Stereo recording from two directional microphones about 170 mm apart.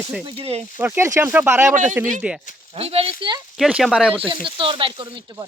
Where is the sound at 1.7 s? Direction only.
45° right (ahead or behind).